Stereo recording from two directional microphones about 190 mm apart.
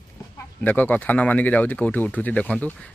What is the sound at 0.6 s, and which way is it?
Speech, 10° left (ahead or behind).